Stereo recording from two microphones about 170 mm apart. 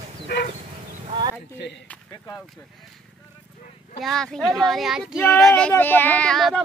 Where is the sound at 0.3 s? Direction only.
90° left.